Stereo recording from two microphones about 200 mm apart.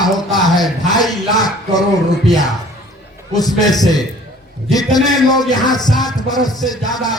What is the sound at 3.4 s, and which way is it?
Speech, 20° left (ahead or behind).